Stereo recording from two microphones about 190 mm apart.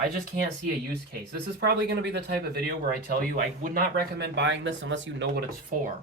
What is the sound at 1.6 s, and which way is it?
Speech, 65° right (ahead or behind).